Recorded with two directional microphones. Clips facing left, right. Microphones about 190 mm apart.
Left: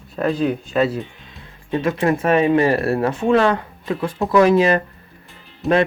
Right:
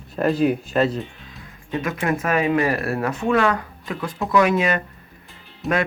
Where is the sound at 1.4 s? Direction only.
30° left (ahead or behind).